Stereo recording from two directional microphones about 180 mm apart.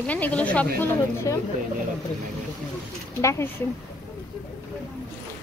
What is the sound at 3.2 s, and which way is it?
Speech, 15° left (ahead or behind).